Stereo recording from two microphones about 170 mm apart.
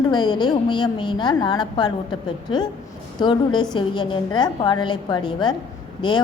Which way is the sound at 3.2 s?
25° left (ahead or behind).